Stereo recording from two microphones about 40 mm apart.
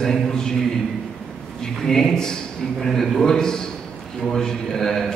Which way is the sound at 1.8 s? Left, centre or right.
Centre.